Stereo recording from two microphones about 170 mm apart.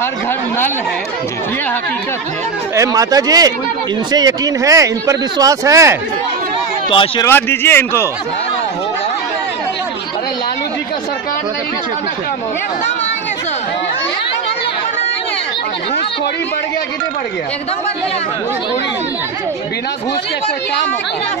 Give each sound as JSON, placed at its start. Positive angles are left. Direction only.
{"t": 2.7, "sound": "speech", "side_deg": -20}
{"t": 6.9, "sound": "a man's voice", "side_deg": 30}
{"t": 7.2, "sound": "speech", "side_deg": 10}